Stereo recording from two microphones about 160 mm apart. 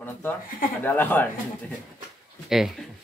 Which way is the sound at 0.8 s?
10° left (ahead or behind).